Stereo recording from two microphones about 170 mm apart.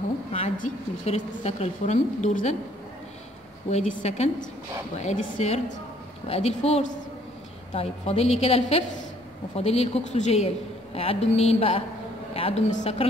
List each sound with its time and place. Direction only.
0.3 s a woman's voice: 40° left (ahead or behind)
3.7 s a woman's voice: 40° left (ahead or behind)